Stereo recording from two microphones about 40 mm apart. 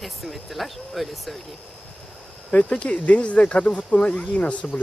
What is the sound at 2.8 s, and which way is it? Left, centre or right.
Speech, left.